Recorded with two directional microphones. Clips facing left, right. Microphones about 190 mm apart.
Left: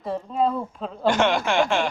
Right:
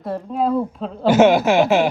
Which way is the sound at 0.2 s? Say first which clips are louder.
Right 5 dB; 5° right (ahead or behind).